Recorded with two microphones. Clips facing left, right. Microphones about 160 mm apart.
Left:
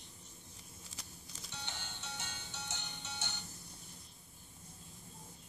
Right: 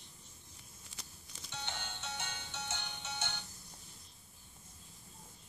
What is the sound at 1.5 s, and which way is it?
Music, 60° right (ahead or behind).